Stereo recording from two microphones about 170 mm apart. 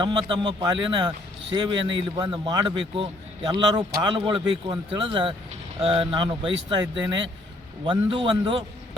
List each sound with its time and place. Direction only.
0.0 s speech: 30° right (ahead or behind)